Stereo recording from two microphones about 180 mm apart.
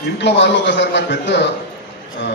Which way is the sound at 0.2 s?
75° left (ahead or behind).